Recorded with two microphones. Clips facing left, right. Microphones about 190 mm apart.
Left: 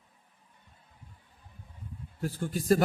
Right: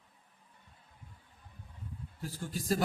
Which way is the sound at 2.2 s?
60° left (ahead or behind).